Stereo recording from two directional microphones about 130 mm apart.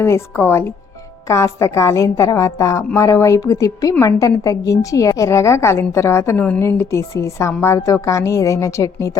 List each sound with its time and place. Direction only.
0.0 s a woman's voice: 20° left (ahead or behind)